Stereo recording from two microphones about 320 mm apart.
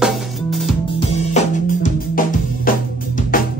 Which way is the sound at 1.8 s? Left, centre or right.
Left.